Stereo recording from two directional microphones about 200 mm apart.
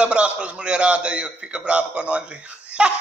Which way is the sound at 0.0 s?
5° right (ahead or behind).